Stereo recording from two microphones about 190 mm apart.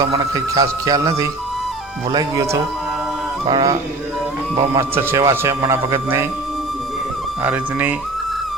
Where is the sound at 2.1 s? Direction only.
20° right (ahead or behind).